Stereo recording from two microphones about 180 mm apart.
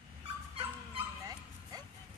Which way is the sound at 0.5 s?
25° right (ahead or behind).